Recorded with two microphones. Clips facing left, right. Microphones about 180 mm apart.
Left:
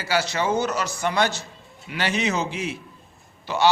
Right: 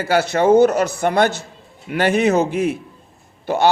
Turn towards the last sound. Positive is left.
turn(degrees=-55)  # may be behind; listen again after turning